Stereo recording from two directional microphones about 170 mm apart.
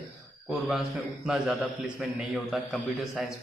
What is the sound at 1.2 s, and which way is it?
A man's voice, centre (ahead or behind).